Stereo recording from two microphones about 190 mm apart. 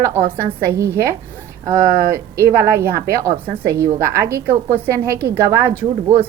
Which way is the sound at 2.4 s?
15° right (ahead or behind).